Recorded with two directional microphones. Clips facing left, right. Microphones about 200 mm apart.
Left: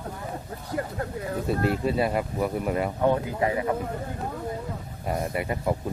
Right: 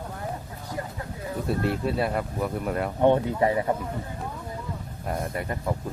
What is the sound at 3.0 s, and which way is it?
Speech, 30° right (ahead or behind).